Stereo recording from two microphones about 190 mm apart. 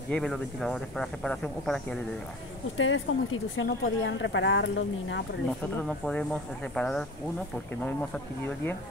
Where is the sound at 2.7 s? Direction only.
90° left.